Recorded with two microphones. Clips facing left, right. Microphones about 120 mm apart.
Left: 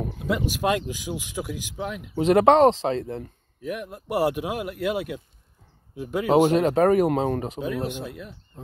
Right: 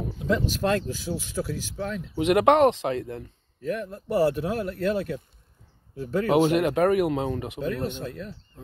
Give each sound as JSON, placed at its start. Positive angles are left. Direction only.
{"t": 0.5, "sound": "speech", "side_deg": 10}
{"t": 2.1, "sound": "speech", "side_deg": 35}
{"t": 3.6, "sound": "speech", "side_deg": 15}
{"t": 6.3, "sound": "speech", "side_deg": 40}
{"t": 7.6, "sound": "speech", "side_deg": 10}